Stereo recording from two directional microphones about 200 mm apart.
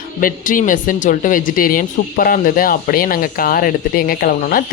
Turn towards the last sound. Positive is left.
turn(degrees=45)  # may be behind; listen again after turning